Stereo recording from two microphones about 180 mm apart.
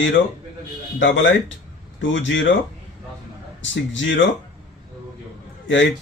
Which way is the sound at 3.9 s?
90° left.